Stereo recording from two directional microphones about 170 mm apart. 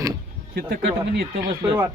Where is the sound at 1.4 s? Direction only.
20° right (ahead or behind).